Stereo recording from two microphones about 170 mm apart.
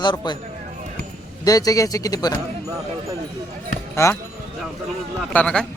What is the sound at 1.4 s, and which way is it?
Speech, 20° left (ahead or behind).